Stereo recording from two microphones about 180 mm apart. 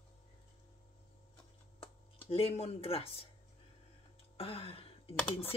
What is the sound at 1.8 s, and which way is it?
Speech, 30° left (ahead or behind).